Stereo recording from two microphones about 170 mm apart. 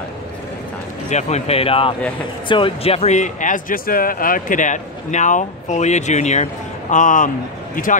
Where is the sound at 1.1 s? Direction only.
40° left (ahead or behind).